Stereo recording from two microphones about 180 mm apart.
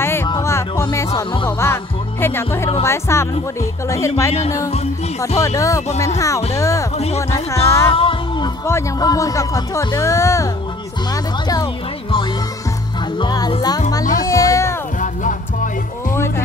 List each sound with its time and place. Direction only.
0.0 s music: 15° left (ahead or behind)
1.6 s music: 15° left (ahead or behind)
2.8 s speech: 15° left (ahead or behind)
5.4 s speech: 20° left (ahead or behind)
7.9 s music: 30° left (ahead or behind)
8.6 s speech: 15° left (ahead or behind)
14.1 s music: 20° left (ahead or behind)
15.0 s music: 45° left (ahead or behind)